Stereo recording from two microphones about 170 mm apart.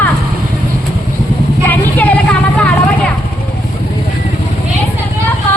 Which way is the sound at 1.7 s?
10° left (ahead or behind).